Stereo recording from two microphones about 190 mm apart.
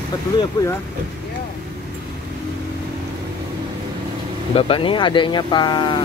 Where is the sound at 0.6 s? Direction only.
20° left (ahead or behind).